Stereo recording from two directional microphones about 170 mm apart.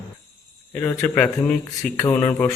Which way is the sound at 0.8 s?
5° left (ahead or behind).